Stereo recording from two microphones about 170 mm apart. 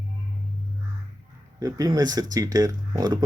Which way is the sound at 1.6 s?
20° right (ahead or behind).